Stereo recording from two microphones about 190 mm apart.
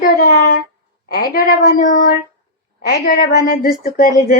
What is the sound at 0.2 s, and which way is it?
A woman's voice, 55° left (ahead or behind).